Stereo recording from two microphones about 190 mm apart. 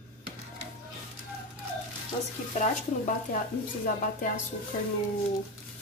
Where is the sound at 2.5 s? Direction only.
40° left (ahead or behind).